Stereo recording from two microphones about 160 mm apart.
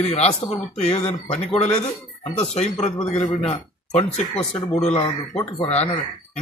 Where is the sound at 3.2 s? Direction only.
35° left (ahead or behind).